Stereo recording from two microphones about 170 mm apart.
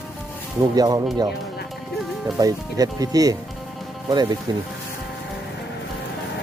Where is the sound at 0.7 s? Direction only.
25° right (ahead or behind).